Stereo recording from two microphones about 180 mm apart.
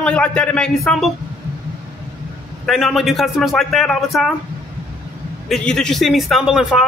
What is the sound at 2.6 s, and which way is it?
Speech, centre (ahead or behind).